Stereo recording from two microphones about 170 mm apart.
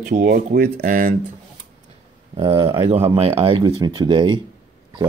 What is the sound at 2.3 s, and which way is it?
Speech, 30° right (ahead or behind).